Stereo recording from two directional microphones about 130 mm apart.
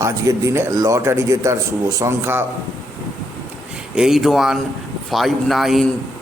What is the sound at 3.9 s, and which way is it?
Speech, 5° right (ahead or behind).